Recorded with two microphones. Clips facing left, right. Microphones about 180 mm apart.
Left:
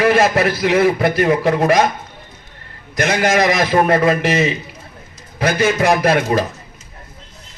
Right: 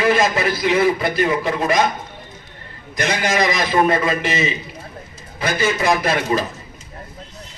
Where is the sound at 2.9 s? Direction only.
55° left (ahead or behind).